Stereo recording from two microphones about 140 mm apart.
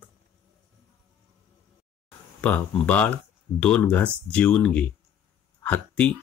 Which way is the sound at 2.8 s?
10° left (ahead or behind).